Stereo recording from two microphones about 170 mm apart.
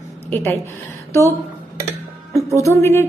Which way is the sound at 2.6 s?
15° left (ahead or behind).